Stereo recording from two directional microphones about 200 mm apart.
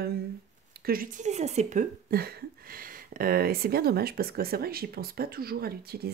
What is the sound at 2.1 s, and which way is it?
Speech, 50° right (ahead or behind).